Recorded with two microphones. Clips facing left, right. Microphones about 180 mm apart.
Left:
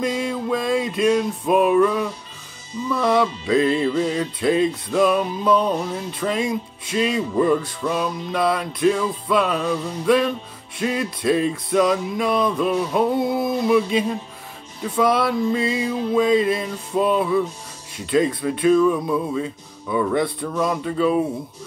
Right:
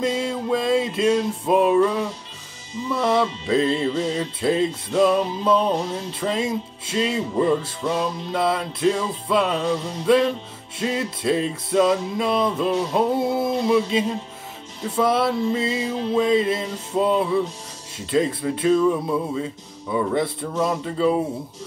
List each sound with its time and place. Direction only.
0.0 s music: 25° right (ahead or behind)